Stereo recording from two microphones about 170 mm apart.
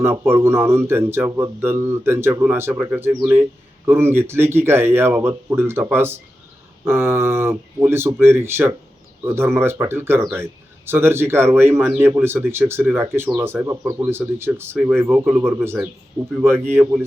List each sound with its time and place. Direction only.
0.0 s speech: 15° right (ahead or behind)